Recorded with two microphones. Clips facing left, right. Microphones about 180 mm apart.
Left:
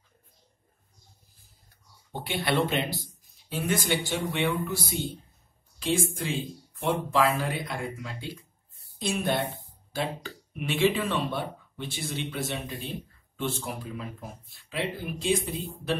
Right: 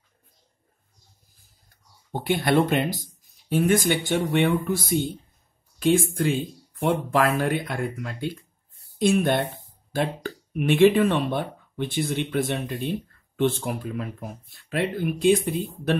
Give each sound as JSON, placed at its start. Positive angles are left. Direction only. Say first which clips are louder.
{"t": 2.1, "sound": "speech", "louder": "right 6 dB", "side_deg": -45}